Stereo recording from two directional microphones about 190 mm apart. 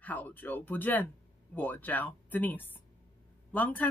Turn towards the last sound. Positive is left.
turn(degrees=10)  # may be behind; listen again after turning